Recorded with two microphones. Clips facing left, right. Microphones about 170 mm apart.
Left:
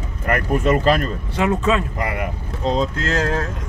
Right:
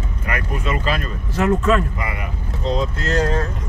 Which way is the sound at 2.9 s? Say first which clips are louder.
Even; 90° left.